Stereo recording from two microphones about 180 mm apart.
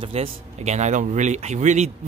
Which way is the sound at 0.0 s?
30° right (ahead or behind).